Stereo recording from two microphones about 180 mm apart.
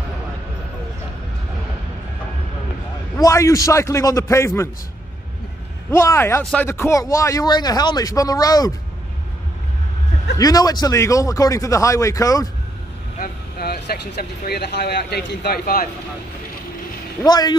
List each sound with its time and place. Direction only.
3.2 s a man's voice: 20° left (ahead or behind)
5.9 s a man's voice: 15° left (ahead or behind)
10.3 s speech: 20° left (ahead or behind)
13.2 s speech: 60° left (ahead or behind)
17.2 s speech: 20° left (ahead or behind)